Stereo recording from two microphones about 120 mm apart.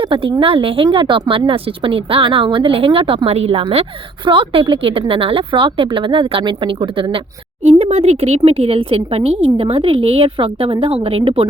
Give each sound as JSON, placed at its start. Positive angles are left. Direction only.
{"t": 0.1, "sound": "speech", "side_deg": -45}
{"t": 4.3, "sound": "speech", "side_deg": -45}
{"t": 7.6, "sound": "a woman's voice", "side_deg": -60}